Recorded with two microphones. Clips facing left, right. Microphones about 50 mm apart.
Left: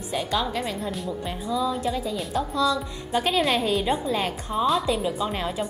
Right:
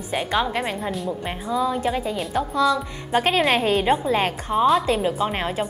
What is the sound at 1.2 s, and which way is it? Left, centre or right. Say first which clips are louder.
A woman's voice: right 2 dB; right.